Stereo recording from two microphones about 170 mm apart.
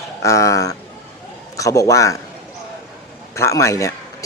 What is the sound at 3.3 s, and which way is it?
Speech, 15° left (ahead or behind).